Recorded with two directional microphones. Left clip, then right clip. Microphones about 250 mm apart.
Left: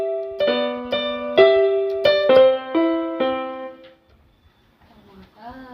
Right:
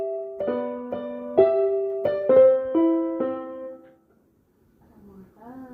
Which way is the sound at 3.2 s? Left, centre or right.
Left.